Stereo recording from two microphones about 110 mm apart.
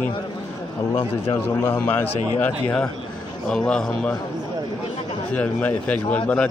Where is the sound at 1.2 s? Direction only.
25° left (ahead or behind); by 4.1 s 10° left (ahead or behind).